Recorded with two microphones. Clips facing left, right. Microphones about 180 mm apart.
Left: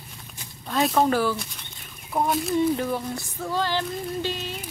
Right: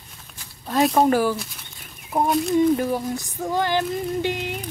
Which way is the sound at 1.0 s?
10° right (ahead or behind).